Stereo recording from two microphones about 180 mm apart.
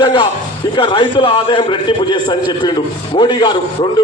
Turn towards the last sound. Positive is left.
turn(degrees=25)  # may be behind; listen again after turning